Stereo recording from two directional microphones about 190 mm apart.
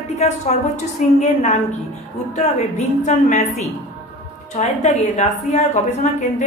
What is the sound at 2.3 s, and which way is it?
A woman's voice, 35° left (ahead or behind).